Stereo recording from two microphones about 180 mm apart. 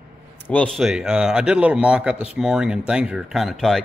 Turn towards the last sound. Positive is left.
turn(degrees=0)  # may be behind; listen again after turning